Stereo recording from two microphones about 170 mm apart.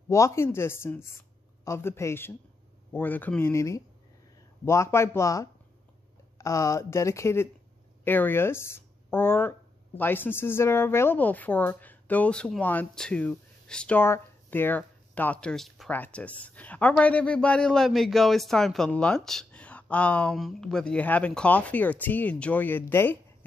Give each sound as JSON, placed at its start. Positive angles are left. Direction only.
{"t": 0.1, "sound": "speech", "side_deg": 15}